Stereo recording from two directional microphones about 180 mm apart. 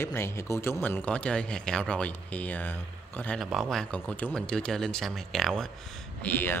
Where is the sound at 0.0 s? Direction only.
15° left (ahead or behind).